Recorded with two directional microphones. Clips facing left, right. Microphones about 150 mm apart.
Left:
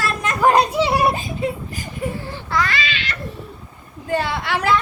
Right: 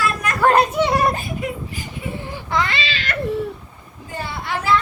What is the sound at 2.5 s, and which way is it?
Baby cry, 20° right (ahead or behind).